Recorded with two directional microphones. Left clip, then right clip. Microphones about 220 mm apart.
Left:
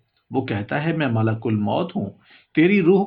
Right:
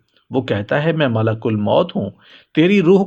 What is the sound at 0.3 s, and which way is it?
Speech, 50° right (ahead or behind).